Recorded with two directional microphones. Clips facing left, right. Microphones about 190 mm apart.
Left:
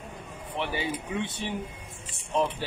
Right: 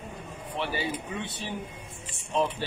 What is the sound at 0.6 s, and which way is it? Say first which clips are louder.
Speech: even; 15° left (ahead or behind).